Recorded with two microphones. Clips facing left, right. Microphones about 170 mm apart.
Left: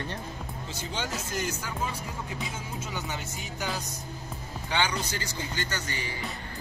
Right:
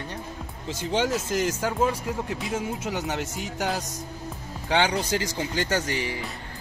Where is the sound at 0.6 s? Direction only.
90° right.